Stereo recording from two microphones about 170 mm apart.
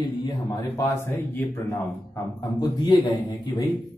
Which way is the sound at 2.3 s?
25° left (ahead or behind).